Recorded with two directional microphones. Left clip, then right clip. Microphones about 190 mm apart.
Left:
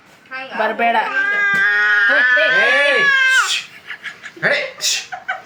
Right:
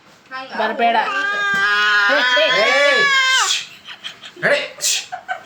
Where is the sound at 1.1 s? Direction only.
55° right (ahead or behind).